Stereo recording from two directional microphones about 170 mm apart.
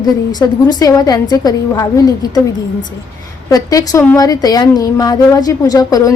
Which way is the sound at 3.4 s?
20° left (ahead or behind).